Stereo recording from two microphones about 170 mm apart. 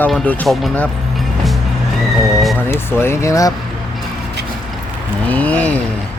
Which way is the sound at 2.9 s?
15° left (ahead or behind).